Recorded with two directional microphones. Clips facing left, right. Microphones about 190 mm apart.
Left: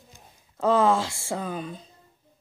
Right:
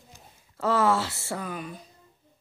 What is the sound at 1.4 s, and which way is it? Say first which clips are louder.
Speech: left 3 dB; 30° left (ahead or behind).